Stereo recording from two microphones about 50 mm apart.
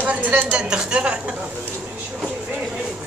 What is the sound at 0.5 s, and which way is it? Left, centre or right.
Speech, centre.